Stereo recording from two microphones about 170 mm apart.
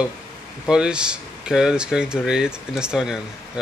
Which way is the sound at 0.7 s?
5° right (ahead or behind).